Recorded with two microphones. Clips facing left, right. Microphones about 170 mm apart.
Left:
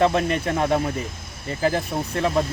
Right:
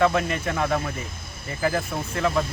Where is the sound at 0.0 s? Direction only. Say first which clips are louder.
Left 2 dB; 30° left (ahead or behind).